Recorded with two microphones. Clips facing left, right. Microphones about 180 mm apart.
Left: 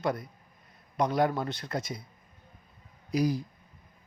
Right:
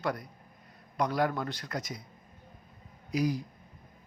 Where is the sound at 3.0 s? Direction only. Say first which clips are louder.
Left 2 dB; 35° left (ahead or behind).